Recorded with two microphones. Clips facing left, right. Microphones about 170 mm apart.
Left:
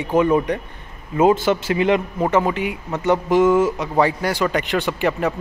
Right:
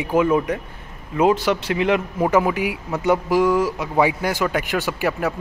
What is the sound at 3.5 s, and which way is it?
Speech, 25° left (ahead or behind).